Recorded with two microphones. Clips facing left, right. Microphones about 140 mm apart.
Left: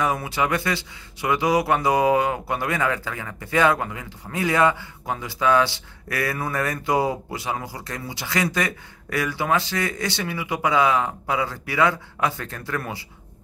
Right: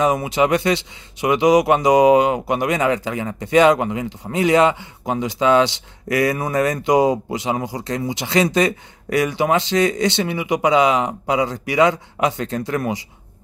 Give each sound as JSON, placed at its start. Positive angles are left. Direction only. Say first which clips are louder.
{"t": 0.0, "sound": "speech", "louder": "right 6 dB", "side_deg": -20}